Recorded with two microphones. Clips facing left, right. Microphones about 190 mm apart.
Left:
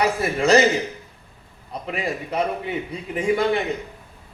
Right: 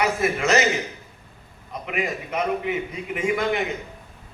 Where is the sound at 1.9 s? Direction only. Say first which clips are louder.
Left 1 dB; 35° left (ahead or behind).